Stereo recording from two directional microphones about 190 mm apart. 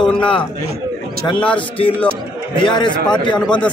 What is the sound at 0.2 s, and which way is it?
Speech, 25° left (ahead or behind).